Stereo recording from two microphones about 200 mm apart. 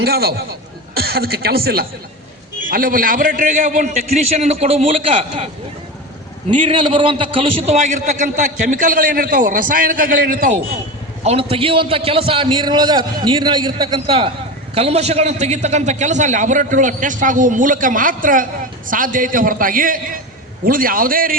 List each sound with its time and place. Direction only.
0.0 s a man's voice: 50° right (ahead or behind); by 5.5 s 30° right (ahead or behind)
6.5 s a man's voice: 30° right (ahead or behind)
11.2 s a man's voice: 30° right (ahead or behind)